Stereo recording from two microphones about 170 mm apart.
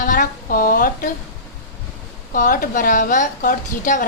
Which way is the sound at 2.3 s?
55° left (ahead or behind).